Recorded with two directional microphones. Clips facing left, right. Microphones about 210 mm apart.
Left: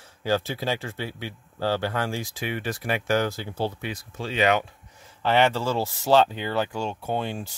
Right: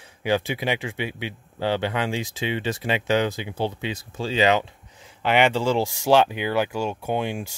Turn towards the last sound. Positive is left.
turn(degrees=-10)  # may be behind; listen again after turning